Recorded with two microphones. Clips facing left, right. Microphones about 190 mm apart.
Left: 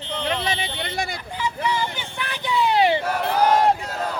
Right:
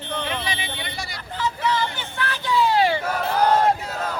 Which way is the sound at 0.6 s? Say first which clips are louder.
Left 5 dB; 55° left (ahead or behind).